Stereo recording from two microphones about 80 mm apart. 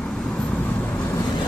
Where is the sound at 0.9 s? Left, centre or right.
Left.